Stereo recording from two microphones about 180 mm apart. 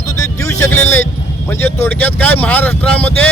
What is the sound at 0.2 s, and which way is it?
Music, 15° left (ahead or behind).